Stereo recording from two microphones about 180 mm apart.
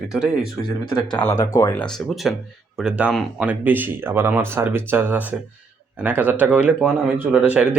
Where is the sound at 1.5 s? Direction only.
15° left (ahead or behind).